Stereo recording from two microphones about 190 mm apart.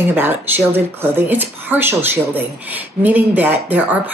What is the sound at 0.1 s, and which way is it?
A man's voice, 10° right (ahead or behind).